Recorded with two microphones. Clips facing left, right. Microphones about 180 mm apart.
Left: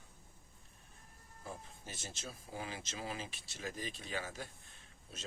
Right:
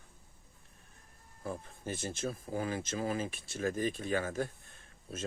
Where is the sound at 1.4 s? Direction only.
55° right (ahead or behind).